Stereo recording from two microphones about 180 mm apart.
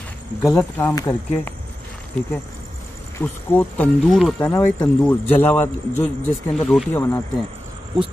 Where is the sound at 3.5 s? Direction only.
10° left (ahead or behind).